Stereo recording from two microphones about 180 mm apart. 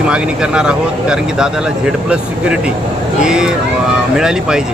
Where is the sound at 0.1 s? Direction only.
5° right (ahead or behind).